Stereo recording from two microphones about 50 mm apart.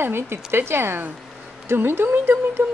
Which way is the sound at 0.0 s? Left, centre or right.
Right.